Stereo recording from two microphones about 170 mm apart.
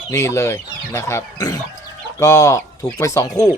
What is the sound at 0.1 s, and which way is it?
Speech, 15° left (ahead or behind).